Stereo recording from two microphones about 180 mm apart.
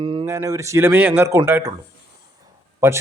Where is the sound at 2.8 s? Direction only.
15° right (ahead or behind).